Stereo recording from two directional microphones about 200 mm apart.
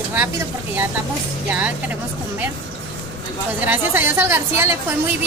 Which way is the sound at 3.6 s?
10° right (ahead or behind).